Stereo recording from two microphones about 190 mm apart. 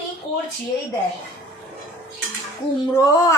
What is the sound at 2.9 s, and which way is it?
Speech, 20° left (ahead or behind).